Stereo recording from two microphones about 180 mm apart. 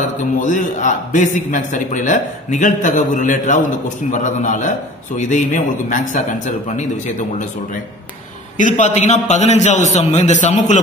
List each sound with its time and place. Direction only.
0.2 s a man's voice: 45° left (ahead or behind)
8.5 s a man's voice: 45° left (ahead or behind)